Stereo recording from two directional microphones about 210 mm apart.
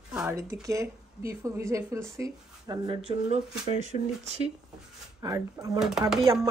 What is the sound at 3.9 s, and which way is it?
Speech, 35° left (ahead or behind).